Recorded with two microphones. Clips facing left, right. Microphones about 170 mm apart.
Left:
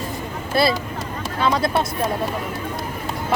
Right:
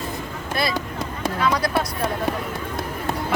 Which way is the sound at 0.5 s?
30° left (ahead or behind).